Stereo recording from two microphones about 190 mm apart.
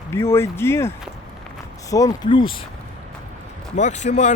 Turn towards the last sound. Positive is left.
turn(degrees=40)  # may be behind; listen again after turning